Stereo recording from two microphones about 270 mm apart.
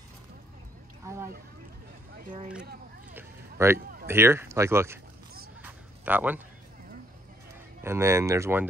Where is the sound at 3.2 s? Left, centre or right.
Centre.